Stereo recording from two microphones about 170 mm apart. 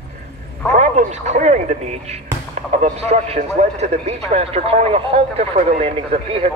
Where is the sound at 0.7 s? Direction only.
45° right (ahead or behind).